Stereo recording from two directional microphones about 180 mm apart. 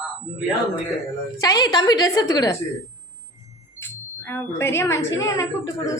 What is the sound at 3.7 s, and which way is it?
Speech, 15° left (ahead or behind).